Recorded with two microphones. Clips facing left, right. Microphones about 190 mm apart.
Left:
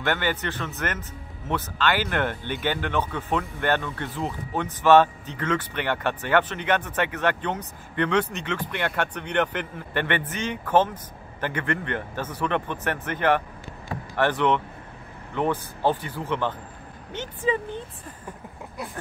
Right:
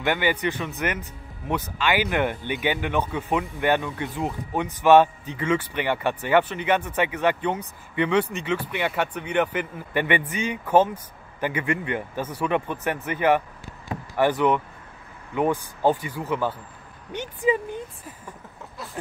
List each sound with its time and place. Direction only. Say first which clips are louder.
0.0 s speech: right 3 dB; 10° right (ahead or behind)